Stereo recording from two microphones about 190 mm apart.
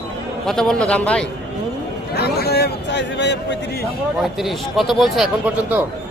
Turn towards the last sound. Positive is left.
turn(degrees=-5)  # may be behind; listen again after turning